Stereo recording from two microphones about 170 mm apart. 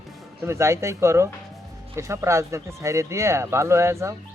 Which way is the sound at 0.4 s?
15° right (ahead or behind).